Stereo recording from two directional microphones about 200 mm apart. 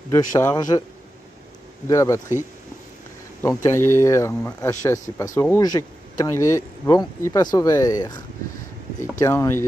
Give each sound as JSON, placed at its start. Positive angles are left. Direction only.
{"t": 0.1, "sound": "speech", "side_deg": 15}
{"t": 1.9, "sound": "speech", "side_deg": 15}
{"t": 3.4, "sound": "speech", "side_deg": 15}
{"t": 9.2, "sound": "speech", "side_deg": 15}